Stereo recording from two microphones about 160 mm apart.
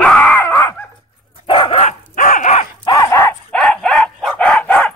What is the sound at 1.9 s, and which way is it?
Dog, 60° left (ahead or behind).